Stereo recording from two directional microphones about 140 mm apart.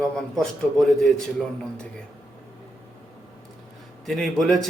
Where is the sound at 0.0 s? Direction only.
Centre (ahead or behind).